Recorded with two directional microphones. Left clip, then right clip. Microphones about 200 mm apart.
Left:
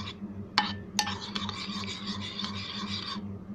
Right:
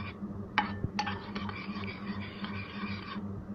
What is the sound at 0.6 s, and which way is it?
Music, 30° left (ahead or behind).